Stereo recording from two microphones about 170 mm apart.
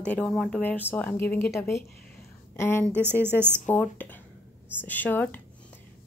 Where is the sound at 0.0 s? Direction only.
5° left (ahead or behind).